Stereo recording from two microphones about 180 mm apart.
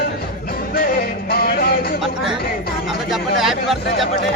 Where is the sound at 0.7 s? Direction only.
55° left (ahead or behind).